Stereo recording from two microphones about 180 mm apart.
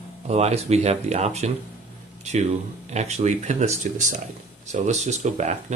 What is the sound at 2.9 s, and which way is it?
Speech, 40° right (ahead or behind).